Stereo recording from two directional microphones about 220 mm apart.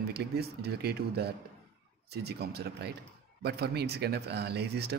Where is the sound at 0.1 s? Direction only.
45° right (ahead or behind).